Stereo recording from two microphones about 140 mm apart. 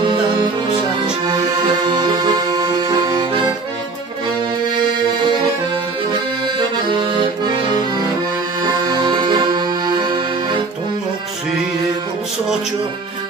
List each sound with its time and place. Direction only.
0.0 s music: 35° right (ahead or behind)
1.2 s accordion: 30° right (ahead or behind)
6.4 s accordion: 35° right (ahead or behind)